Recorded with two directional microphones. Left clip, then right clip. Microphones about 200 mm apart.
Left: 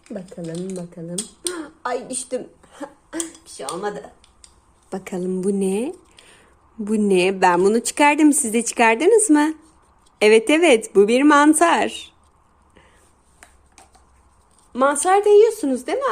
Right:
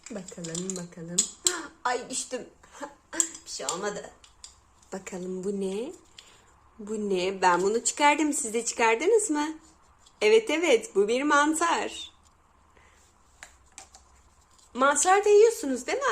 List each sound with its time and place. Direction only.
0.8 s speech: centre (ahead or behind)
1.5 s speech: 25° left (ahead or behind)
2.7 s a sound: 40° left (ahead or behind)
4.9 s a woman's voice: 45° left (ahead or behind)
13.4 s finger snapping: centre (ahead or behind)
14.7 s speech: 25° left (ahead or behind)